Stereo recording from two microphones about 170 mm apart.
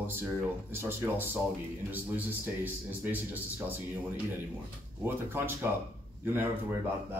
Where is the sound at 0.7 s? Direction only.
15° right (ahead or behind).